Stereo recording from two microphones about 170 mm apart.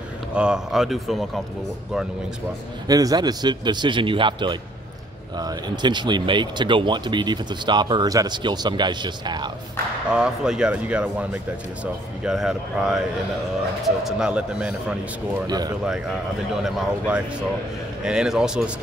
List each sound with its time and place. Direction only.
0.3 s speech: 5° right (ahead or behind)
2.9 s speech: 20° right (ahead or behind)
10.1 s speech: 5° right (ahead or behind)
15.4 s speech: 25° right (ahead or behind)
16.5 s speech: 5° right (ahead or behind)